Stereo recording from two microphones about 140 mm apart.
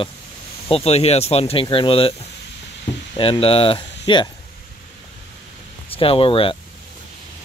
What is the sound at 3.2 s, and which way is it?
Speech, 40° left (ahead or behind).